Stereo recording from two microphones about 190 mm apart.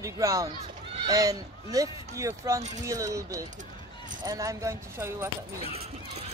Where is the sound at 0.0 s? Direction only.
15° right (ahead or behind).